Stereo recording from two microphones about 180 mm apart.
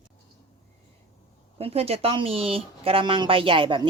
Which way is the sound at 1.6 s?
35° right (ahead or behind).